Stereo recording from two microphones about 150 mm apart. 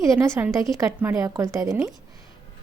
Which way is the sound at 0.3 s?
15° right (ahead or behind).